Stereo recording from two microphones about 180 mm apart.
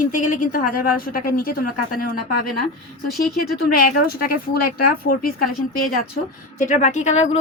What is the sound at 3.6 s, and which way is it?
A woman's voice, 55° left (ahead or behind).